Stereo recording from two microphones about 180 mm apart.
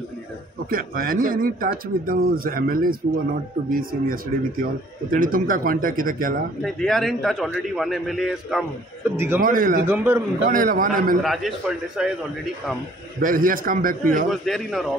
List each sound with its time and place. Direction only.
0.7 s speech: 50° right (ahead or behind)
6.6 s a man's voice: centre (ahead or behind)
9.1 s a man's voice: 15° right (ahead or behind)
9.4 s speech: 50° right (ahead or behind)
9.8 s a man's voice: 15° right (ahead or behind)
10.5 s speech: 50° right (ahead or behind)
12.0 s a man's voice: 5° right (ahead or behind)
13.2 s speech: 50° right (ahead or behind)
14.3 s a man's voice: centre (ahead or behind)